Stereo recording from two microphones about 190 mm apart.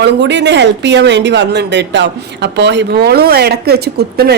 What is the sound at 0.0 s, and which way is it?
A woman's voice, 70° right (ahead or behind).